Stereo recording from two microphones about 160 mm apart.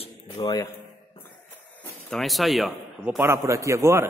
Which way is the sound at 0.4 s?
25° left (ahead or behind).